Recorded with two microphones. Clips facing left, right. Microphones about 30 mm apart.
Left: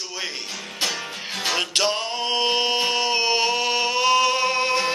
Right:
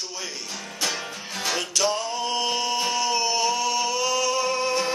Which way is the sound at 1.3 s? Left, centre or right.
Left.